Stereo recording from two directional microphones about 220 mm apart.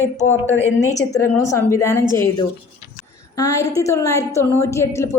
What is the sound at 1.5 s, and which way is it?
Speech, 10° left (ahead or behind).